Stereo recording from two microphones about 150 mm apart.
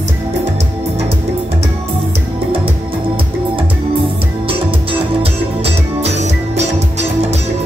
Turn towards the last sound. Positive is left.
turn(degrees=-45)  # may be behind; listen again after turning